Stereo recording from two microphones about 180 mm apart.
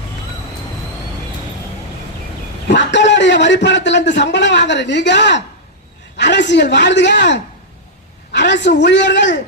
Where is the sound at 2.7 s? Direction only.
80° left.